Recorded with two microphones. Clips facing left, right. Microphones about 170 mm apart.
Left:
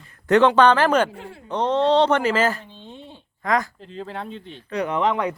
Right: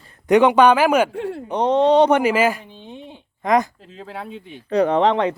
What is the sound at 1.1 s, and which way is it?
Speech, 70° right (ahead or behind).